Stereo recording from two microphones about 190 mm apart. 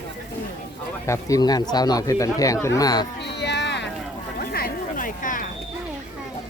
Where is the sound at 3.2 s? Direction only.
65° left (ahead or behind).